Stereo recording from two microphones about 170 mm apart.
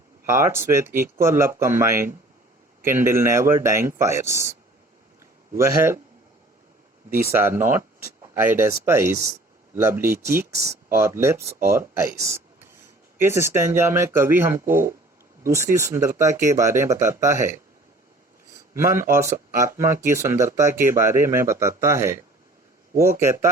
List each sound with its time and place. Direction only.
0.3 s speech: 15° right (ahead or behind)
5.5 s speech: 15° right (ahead or behind)
7.2 s speech: 15° right (ahead or behind)